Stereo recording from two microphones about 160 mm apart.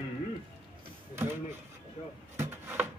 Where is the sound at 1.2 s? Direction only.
15° right (ahead or behind).